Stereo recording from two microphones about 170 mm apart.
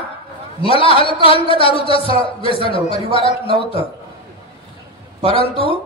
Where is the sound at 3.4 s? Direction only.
30° right (ahead or behind).